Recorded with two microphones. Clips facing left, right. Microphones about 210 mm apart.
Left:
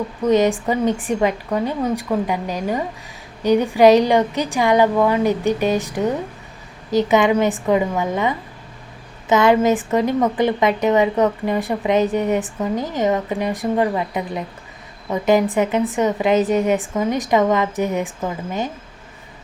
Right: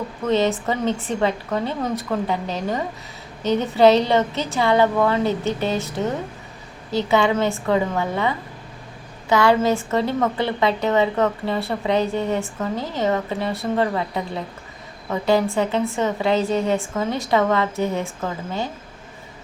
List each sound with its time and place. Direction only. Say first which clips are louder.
0.2 s a woman's voice: left 4 dB; 15° left (ahead or behind)